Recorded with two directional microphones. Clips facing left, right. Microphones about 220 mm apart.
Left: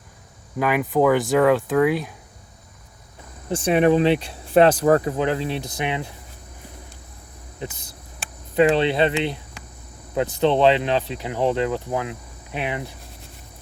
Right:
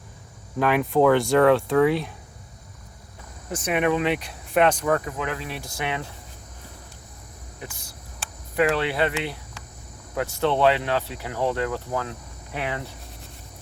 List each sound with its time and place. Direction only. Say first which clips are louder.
0.6 s speech: even; 5° left (ahead or behind)
3.5 s speech: left 6 dB; 30° left (ahead or behind)
7.6 s a sound: left 7 dB; 20° left (ahead or behind)
10.2 s speech: left 4 dB; 20° left (ahead or behind)